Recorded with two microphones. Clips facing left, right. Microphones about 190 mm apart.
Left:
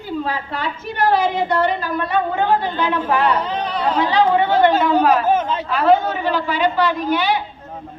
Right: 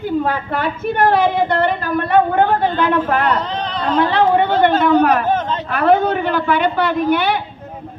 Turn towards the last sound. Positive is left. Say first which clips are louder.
# right 3 dB
turn(degrees=-55)  # may be behind; listen again after turning